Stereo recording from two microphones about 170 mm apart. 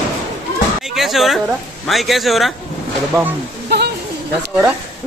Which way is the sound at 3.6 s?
75° right (ahead or behind).